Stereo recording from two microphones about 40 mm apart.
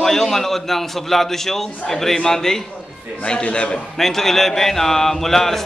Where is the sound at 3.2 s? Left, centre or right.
Left.